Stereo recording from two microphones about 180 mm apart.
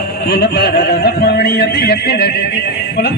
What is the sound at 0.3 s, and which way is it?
A man's voice, 65° left (ahead or behind).